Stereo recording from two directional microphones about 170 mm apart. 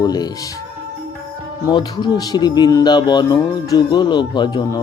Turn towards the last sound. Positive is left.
turn(degrees=25)  # may be behind; listen again after turning